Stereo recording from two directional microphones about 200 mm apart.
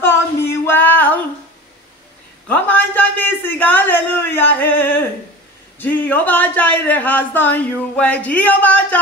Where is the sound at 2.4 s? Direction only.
10° left (ahead or behind).